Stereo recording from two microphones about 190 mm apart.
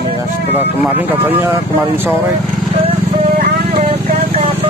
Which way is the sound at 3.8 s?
35° right (ahead or behind).